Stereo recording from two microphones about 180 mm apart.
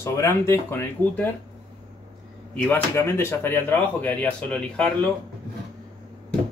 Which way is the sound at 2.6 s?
10° left (ahead or behind).